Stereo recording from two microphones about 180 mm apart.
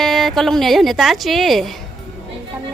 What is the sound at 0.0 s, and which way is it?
Speech, centre (ahead or behind).